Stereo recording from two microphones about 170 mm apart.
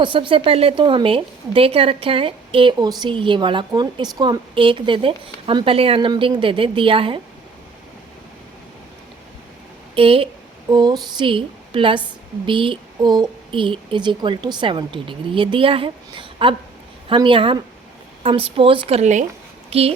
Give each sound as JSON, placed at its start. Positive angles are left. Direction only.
{"t": 0.0, "sound": "a woman's voice", "side_deg": -30}
{"t": 9.9, "sound": "a woman's voice", "side_deg": -30}